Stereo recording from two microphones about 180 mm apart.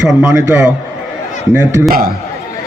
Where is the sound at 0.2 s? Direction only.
15° right (ahead or behind).